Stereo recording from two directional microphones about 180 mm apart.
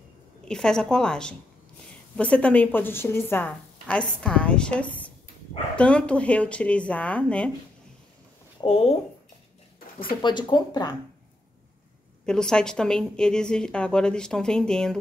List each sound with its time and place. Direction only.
0.5 s a woman's voice: 5° left (ahead or behind)
8.5 s speech: 30° left (ahead or behind)
10.2 s speech: 25° left (ahead or behind)
12.3 s a woman's voice: 5° left (ahead or behind)